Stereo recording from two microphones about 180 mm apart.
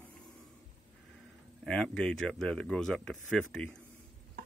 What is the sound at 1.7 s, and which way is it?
Speech, 5° left (ahead or behind).